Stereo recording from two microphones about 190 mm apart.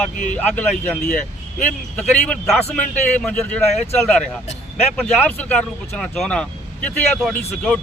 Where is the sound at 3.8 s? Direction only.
35° left (ahead or behind).